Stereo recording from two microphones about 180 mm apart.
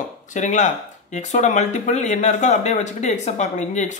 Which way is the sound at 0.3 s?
45° left (ahead or behind).